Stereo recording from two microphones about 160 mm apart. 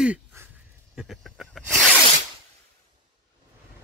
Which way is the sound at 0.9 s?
Centre (ahead or behind).